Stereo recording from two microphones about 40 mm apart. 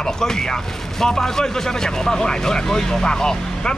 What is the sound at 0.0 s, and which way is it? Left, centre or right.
Speech, centre.